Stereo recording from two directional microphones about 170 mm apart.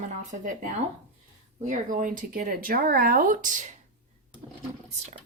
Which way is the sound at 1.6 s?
50° right (ahead or behind).